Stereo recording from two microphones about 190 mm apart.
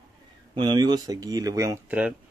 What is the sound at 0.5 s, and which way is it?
Speech, 20° right (ahead or behind).